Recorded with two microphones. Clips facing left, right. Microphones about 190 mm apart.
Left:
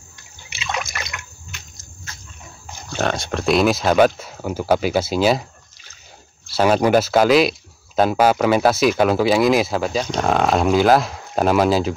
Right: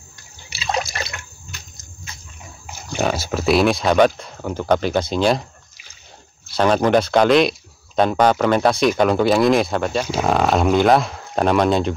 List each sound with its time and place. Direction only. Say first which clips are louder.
0.5 s water: right 4 dB; 35° right (ahead or behind)
2.6 s speech: right 1 dB; 10° right (ahead or behind)
6.5 s speech: even; 5° left (ahead or behind)